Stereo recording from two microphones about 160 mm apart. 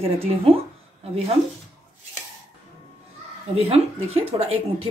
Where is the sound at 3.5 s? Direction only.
40° right (ahead or behind).